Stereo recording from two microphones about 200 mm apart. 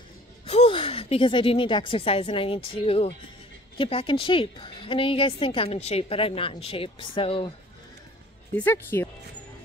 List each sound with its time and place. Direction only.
0.5 s a woman's voice: 30° left (ahead or behind)
8.5 s speech: 10° left (ahead or behind)